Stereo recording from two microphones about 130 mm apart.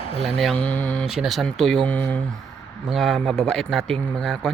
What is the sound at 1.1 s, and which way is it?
A man's voice, centre (ahead or behind).